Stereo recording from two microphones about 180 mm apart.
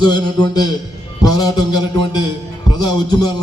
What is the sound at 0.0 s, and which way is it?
A man's voice, 25° left (ahead or behind).